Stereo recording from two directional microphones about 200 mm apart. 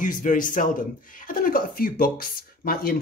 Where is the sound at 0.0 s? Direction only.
40° left (ahead or behind).